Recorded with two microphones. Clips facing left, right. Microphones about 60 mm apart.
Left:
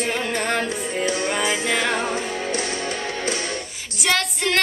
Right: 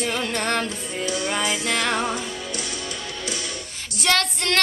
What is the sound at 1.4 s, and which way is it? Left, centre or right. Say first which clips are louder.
Music: left 2 dB; left.